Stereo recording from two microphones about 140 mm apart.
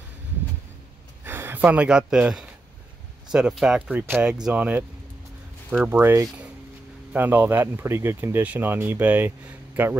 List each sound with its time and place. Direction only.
1.2 s speech: 15° right (ahead or behind)